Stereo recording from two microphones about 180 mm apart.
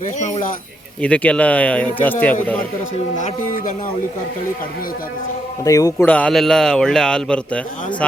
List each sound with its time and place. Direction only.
0.2 s speech: 40° left (ahead or behind)
1.0 s speech: 5° left (ahead or behind)
3.2 s speech: 45° left (ahead or behind)
5.6 s speech: 20° left (ahead or behind)
6.1 s speech: 5° left (ahead or behind)